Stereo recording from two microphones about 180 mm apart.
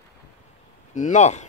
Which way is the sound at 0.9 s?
40° left (ahead or behind).